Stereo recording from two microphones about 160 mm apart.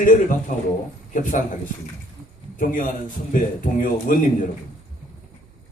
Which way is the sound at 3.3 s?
55° left (ahead or behind).